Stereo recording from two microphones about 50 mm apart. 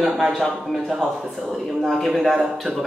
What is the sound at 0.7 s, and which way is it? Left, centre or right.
A man's voice, centre.